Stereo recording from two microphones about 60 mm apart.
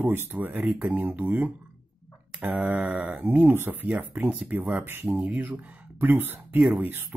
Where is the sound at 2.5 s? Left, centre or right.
Centre.